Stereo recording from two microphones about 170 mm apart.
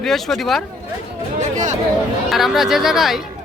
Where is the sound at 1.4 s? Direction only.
45° right (ahead or behind).